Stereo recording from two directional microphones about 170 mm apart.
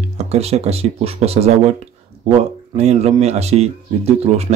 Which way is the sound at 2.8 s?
40° right (ahead or behind).